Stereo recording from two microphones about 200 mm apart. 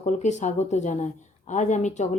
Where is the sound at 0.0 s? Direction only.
35° left (ahead or behind).